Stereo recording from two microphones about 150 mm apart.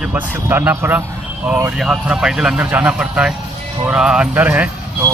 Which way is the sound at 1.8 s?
5° right (ahead or behind).